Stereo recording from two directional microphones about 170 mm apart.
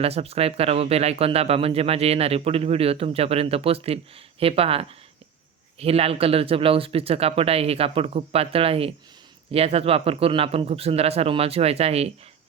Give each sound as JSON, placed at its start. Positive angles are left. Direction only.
{"t": 0.0, "sound": "speech", "side_deg": -35}